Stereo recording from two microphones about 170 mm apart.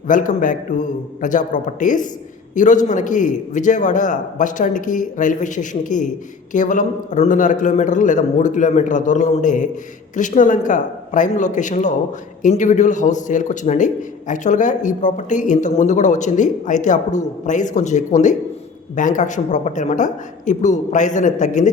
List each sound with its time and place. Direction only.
0.1 s a man's voice: 50° left (ahead or behind)